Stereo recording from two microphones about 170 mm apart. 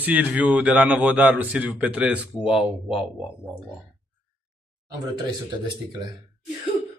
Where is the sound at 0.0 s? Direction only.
10° right (ahead or behind).